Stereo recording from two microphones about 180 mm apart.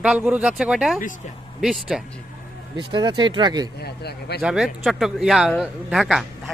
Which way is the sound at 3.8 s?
65° left (ahead or behind).